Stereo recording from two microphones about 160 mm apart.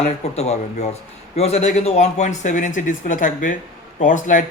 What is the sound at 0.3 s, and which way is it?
A man's voice, 40° left (ahead or behind).